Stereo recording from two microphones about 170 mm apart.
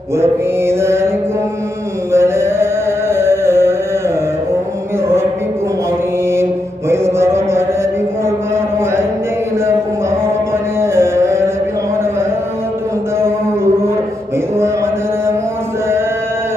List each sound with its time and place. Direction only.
0.2 s mantra: 15° right (ahead or behind)
2.1 s music: 15° right (ahead or behind)
6.9 s mantra: 15° right (ahead or behind)
10.8 s music: 15° right (ahead or behind)